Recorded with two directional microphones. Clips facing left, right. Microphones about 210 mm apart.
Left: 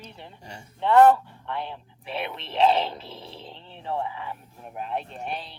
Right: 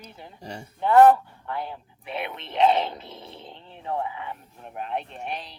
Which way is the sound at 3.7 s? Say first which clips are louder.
Even; 30° left (ahead or behind).